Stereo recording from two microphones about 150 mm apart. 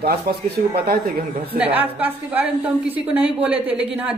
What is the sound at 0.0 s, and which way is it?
Speech, 90° right.